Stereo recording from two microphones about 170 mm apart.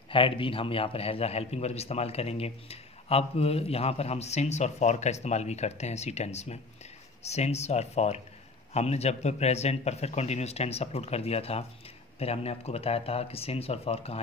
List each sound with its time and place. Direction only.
0.1 s a man's voice: 30° left (ahead or behind)